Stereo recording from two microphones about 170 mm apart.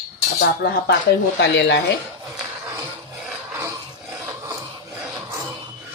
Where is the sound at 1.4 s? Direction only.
90° left.